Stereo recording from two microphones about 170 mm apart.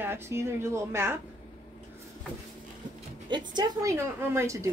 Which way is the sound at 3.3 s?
25° right (ahead or behind).